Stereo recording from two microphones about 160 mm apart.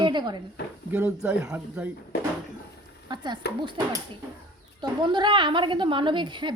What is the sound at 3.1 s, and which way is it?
Speech, 25° right (ahead or behind).